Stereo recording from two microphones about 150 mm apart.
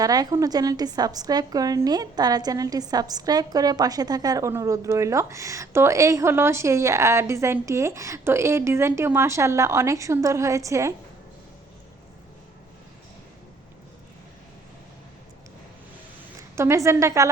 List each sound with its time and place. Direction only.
0.0 s a woman's voice: 25° right (ahead or behind)
16.6 s a woman's voice: 20° right (ahead or behind)